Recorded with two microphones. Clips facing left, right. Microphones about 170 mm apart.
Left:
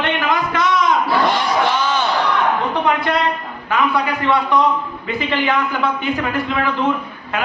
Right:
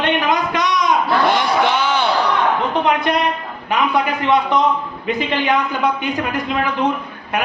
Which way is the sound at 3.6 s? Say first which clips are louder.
Even; 20° right (ahead or behind).